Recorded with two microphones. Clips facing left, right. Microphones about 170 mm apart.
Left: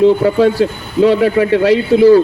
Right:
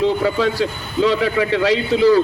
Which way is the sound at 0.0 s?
50° left (ahead or behind).